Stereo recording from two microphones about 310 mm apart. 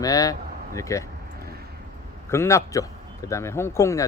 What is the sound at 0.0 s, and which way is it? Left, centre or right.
Speech, centre.